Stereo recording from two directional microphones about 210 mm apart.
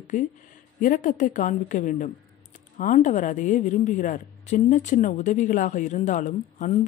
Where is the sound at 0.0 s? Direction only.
35° left (ahead or behind).